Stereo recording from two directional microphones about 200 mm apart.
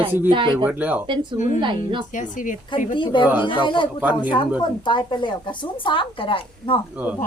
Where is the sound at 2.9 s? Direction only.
25° left (ahead or behind).